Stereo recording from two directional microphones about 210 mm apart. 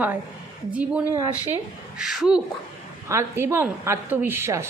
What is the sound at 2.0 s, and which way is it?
A man's voice, centre (ahead or behind).